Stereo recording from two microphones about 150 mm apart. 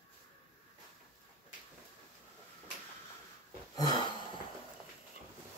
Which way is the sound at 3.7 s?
25° left (ahead or behind).